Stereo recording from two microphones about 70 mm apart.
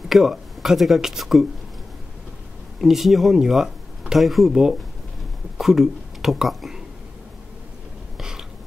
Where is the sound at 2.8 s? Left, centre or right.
Centre.